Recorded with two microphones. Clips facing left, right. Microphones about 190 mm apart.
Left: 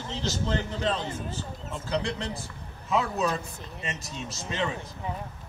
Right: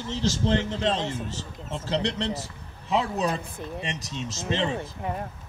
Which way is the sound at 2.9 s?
35° right (ahead or behind).